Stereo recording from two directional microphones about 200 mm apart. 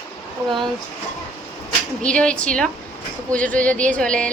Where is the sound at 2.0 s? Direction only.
5° left (ahead or behind).